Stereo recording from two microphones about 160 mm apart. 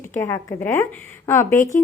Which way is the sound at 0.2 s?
20° left (ahead or behind).